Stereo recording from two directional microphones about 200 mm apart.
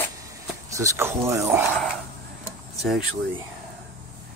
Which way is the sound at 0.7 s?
15° right (ahead or behind).